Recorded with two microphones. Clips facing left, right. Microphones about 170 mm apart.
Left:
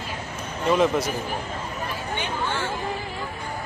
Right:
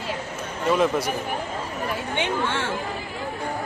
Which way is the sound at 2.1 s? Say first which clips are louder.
Right 2 dB; 75° right (ahead or behind).